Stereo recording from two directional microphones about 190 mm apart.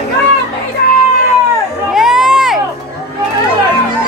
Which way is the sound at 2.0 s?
5° right (ahead or behind).